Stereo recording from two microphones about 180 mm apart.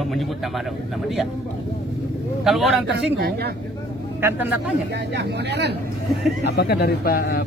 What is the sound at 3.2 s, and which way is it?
Speech, 60° right (ahead or behind).